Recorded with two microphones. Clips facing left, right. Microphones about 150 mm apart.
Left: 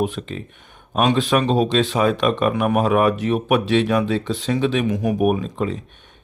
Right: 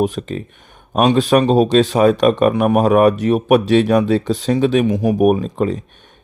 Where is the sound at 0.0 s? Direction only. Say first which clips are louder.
Right 5 dB; 40° right (ahead or behind).